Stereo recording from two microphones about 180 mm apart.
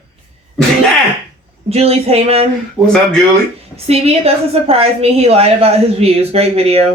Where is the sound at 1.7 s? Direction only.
35° right (ahead or behind).